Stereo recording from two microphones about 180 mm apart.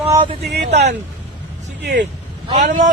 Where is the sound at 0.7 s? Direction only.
40° right (ahead or behind).